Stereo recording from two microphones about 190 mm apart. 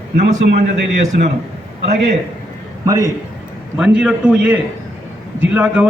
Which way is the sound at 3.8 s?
5° right (ahead or behind).